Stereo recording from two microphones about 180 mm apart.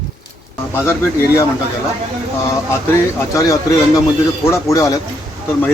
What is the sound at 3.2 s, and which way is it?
Speech, 20° left (ahead or behind).